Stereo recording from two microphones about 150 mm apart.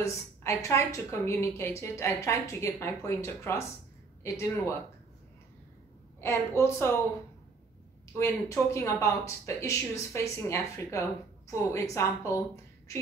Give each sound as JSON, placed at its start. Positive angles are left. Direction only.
{"t": 0.0, "sound": "a woman's voice", "side_deg": 20}
{"t": 6.2, "sound": "a woman's voice", "side_deg": 15}
{"t": 8.2, "sound": "a woman's voice", "side_deg": 20}